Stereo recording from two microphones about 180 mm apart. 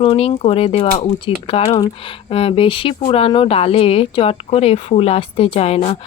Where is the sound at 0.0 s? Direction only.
30° left (ahead or behind).